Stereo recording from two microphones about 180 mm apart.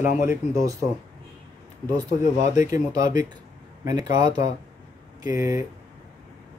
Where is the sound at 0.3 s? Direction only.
20° right (ahead or behind).